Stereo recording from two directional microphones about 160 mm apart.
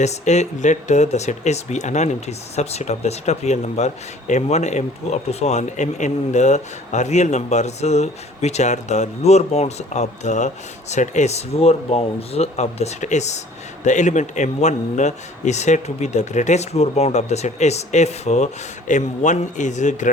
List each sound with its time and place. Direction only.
0.0 s speech: 45° left (ahead or behind)